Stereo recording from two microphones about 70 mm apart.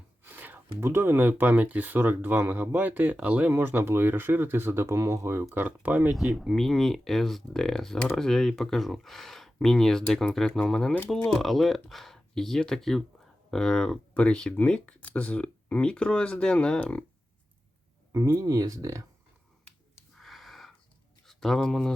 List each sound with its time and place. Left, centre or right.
0.2 s a sound: right
0.9 s speech: right
3.5 s speech: right
5.6 s speech: right
6.1 s speech: centre
18.4 s speech: right
20.1 s a sound: centre
21.2 s speech: centre